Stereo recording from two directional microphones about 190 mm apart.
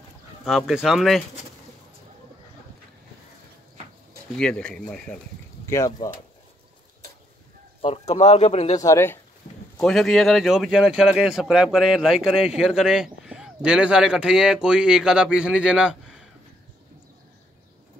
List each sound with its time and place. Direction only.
0.5 s speech: centre (ahead or behind)
4.4 s speech: 5° left (ahead or behind)
5.7 s speech: 15° left (ahead or behind)
8.1 s speech: 35° left (ahead or behind)
8.8 s speech: 15° left (ahead or behind)
9.8 s speech: centre (ahead or behind)